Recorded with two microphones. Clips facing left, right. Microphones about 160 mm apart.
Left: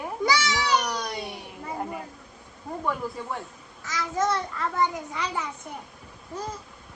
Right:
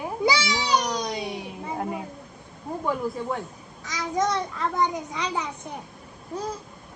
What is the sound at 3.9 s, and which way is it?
A child's voice, 15° right (ahead or behind).